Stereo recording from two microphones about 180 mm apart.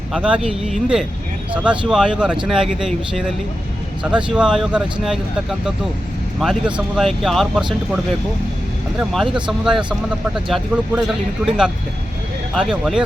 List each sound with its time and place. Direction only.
0.1 s speech: 5° right (ahead or behind)
6.7 s speech: centre (ahead or behind)
9.0 s speech: 5° right (ahead or behind)